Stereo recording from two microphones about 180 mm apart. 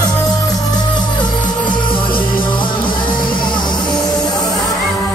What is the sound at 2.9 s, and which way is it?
Music, 50° left (ahead or behind).